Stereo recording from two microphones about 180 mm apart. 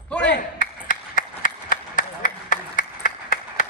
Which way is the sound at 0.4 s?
45° left (ahead or behind).